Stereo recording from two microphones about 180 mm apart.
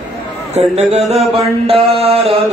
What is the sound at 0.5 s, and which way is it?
Mantra, 35° right (ahead or behind).